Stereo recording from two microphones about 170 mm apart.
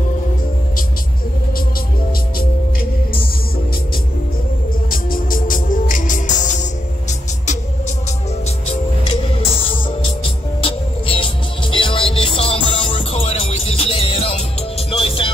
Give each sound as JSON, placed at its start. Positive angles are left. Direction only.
{"t": 4.9, "sound": "music", "side_deg": 55}
{"t": 9.1, "sound": "music", "side_deg": 35}